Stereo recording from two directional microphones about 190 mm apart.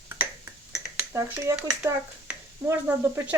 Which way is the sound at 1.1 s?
15° right (ahead or behind).